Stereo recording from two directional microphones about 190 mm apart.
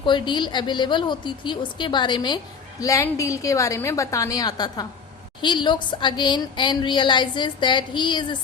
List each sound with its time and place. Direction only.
0.0 s a woman's voice: 25° left (ahead or behind)